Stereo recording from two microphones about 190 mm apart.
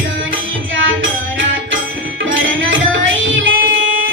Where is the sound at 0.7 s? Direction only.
90° right.